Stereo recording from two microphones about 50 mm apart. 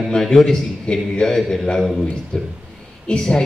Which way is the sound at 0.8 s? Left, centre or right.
Centre.